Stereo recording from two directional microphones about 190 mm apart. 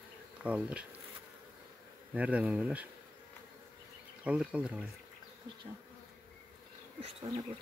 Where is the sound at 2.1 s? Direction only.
5° right (ahead or behind).